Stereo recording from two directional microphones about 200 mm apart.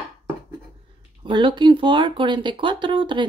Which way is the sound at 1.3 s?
25° right (ahead or behind).